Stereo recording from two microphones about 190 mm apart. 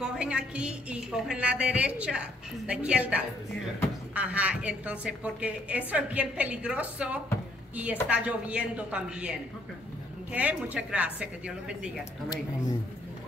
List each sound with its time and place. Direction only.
0.0 s a woman's voice: 5° right (ahead or behind)